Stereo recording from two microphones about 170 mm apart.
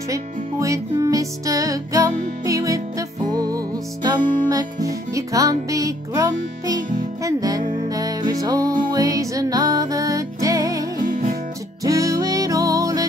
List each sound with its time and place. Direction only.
0.1 s music: 20° right (ahead or behind)
11.0 s music: 50° right (ahead or behind)
11.8 s music: 20° right (ahead or behind)